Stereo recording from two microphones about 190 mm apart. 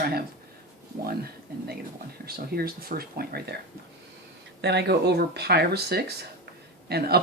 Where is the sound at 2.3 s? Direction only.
55° right (ahead or behind).